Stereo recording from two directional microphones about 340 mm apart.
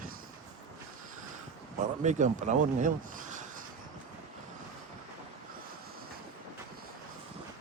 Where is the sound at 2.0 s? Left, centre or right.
Right.